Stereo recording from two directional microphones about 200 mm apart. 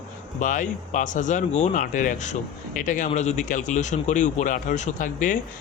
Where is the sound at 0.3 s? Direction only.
40° left (ahead or behind).